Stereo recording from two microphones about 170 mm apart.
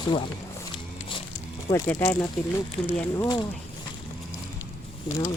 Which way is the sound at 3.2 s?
25° left (ahead or behind).